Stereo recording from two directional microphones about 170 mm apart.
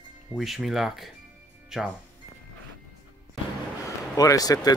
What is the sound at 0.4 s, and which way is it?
Speech, centre (ahead or behind).